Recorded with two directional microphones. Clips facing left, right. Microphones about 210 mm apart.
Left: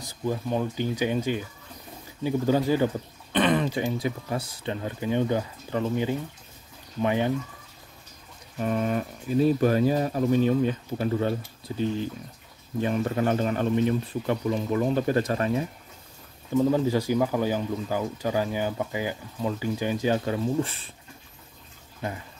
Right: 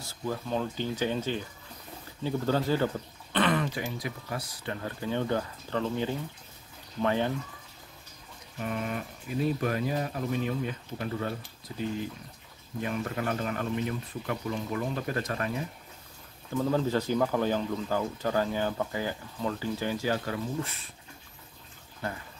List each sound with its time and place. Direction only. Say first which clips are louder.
0.0 s speech: left 5 dB; 15° left (ahead or behind)
3.3 s throat clearing: left 4 dB; 20° left (ahead or behind)
3.8 s speech: left 8 dB; 25° left (ahead or behind)
8.6 s speech: left 7 dB; 40° left (ahead or behind)
12.8 s speech: left 7 dB; 30° left (ahead or behind)
16.5 s speech: left 5 dB; 15° left (ahead or behind)